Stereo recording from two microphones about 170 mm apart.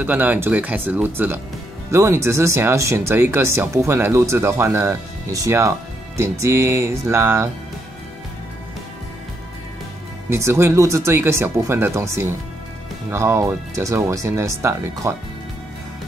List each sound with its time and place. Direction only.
0.0 s speech: 10° right (ahead or behind)
10.3 s speech: 15° right (ahead or behind)